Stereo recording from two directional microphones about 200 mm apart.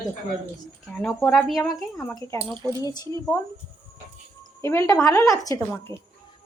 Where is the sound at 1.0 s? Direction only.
5° left (ahead or behind).